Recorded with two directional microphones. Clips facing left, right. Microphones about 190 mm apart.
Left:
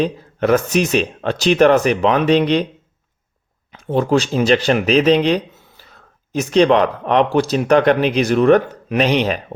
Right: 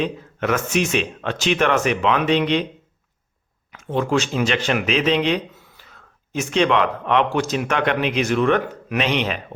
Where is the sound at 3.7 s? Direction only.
35° left (ahead or behind).